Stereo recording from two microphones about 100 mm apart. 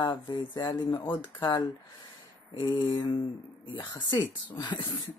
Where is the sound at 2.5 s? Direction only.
50° left (ahead or behind).